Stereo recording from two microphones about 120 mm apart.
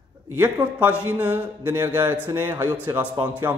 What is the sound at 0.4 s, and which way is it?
A man's voice, 15° right (ahead or behind).